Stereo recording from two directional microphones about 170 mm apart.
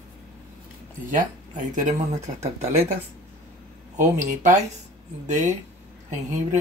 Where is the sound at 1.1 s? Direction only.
45° right (ahead or behind).